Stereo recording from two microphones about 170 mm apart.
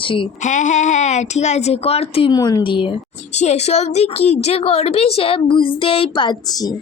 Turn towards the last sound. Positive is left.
turn(degrees=30)  # may be behind; listen again after turning